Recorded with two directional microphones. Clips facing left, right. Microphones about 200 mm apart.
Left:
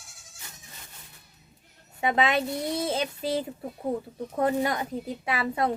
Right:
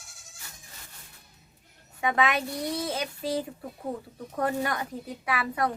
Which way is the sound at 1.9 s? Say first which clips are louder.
Left 2 dB; 25° left (ahead or behind).